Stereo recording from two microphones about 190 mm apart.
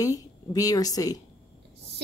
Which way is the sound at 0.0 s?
20° left (ahead or behind).